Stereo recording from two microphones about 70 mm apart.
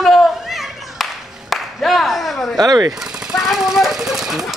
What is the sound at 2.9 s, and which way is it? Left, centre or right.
Speech, centre.